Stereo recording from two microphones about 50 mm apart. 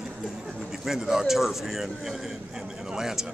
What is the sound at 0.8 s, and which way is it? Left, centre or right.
A man's voice, centre.